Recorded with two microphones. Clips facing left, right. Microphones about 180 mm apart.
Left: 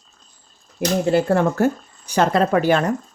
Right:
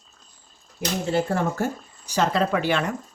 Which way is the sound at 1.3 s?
65° left (ahead or behind).